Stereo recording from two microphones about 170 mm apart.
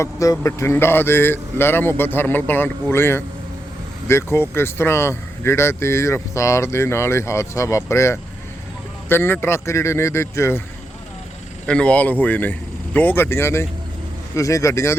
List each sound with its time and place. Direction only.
0.0 s speech: 20° left (ahead or behind)
11.6 s speech: 5° left (ahead or behind)